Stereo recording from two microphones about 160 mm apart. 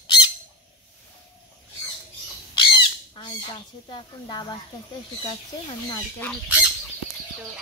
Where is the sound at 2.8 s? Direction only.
30° left (ahead or behind).